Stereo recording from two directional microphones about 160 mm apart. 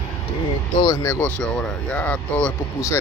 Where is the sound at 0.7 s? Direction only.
25° left (ahead or behind).